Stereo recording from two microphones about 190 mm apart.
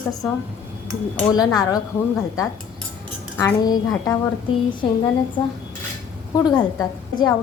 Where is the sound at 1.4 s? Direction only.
20° left (ahead or behind).